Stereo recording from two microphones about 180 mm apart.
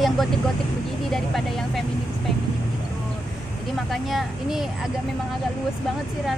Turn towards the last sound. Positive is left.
turn(degrees=0)  # may be behind; listen again after turning